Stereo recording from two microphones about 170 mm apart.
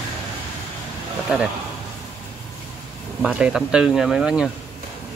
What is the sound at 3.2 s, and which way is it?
Speech, 5° right (ahead or behind).